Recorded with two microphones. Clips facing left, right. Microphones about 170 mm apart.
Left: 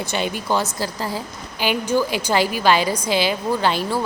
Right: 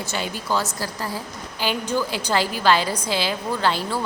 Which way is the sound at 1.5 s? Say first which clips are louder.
Left 4 dB; 10° left (ahead or behind).